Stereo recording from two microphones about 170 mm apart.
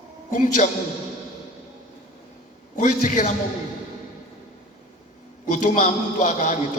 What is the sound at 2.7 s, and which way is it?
Speech, 50° left (ahead or behind).